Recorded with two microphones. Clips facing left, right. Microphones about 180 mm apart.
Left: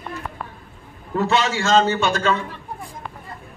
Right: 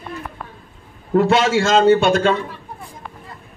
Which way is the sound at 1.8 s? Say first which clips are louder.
Right 7 dB; 50° right (ahead or behind).